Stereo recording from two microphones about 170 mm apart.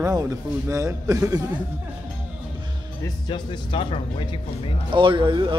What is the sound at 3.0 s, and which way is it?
Speech, 25° left (ahead or behind).